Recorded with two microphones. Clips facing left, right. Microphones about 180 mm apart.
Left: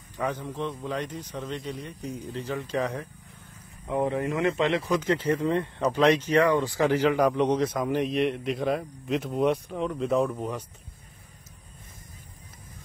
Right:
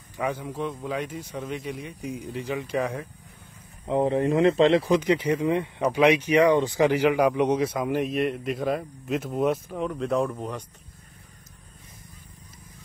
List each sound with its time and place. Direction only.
0.2 s speech: 10° right (ahead or behind)
3.8 s speech: 30° right (ahead or behind)
5.0 s speech: 15° right (ahead or behind); by 10.6 s centre (ahead or behind)